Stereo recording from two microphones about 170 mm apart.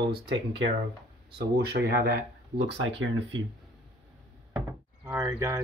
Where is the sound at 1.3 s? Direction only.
70° right (ahead or behind); by 3.4 s 85° right.